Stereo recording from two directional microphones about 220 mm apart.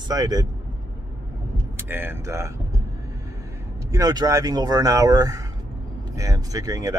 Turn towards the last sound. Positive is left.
turn(degrees=-15)  # may be behind; listen again after turning